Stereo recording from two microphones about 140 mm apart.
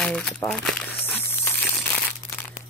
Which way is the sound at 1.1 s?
15° left (ahead or behind).